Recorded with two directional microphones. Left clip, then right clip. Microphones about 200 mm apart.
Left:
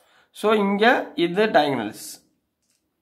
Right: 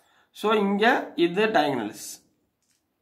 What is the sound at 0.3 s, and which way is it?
Speech, 25° left (ahead or behind).